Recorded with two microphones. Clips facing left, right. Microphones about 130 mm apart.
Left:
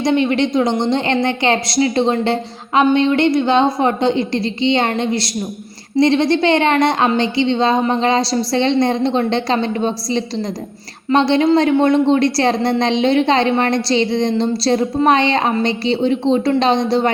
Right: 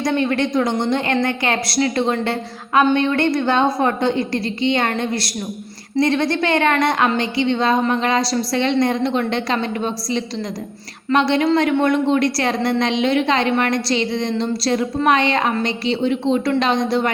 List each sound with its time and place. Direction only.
0.0 s a woman's voice: 20° left (ahead or behind)